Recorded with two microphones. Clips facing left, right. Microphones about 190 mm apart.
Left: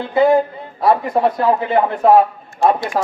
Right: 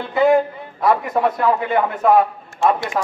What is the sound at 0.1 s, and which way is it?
A man's voice, 25° left (ahead or behind).